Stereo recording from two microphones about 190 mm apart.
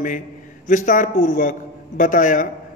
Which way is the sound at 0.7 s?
45° left (ahead or behind).